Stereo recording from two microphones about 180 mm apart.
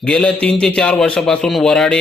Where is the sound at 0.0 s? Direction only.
5° left (ahead or behind).